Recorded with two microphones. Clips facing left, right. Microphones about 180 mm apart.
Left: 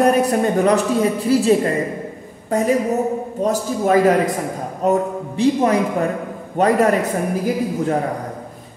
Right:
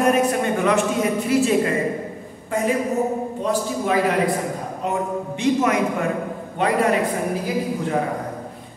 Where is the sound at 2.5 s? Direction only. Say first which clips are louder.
Left 4 dB; 40° left (ahead or behind).